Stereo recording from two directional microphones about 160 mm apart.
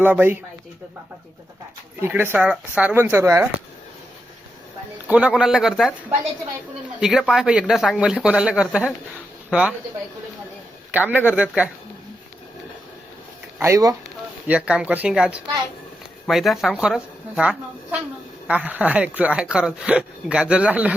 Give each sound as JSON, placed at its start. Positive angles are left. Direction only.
{"t": 0.0, "sound": "speech", "side_deg": -10}
{"t": 2.0, "sound": "speech", "side_deg": -15}
{"t": 5.0, "sound": "speech", "side_deg": -10}
{"t": 7.0, "sound": "speech", "side_deg": 0}
{"t": 10.9, "sound": "speech", "side_deg": -10}
{"t": 13.6, "sound": "speech", "side_deg": -20}
{"t": 14.4, "sound": "speech", "side_deg": -10}